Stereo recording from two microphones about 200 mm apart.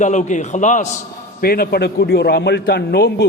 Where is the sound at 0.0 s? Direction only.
35° left (ahead or behind).